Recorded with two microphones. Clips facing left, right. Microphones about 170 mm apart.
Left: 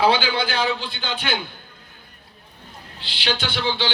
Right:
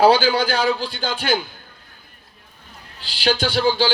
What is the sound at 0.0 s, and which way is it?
A man's voice, 40° right (ahead or behind).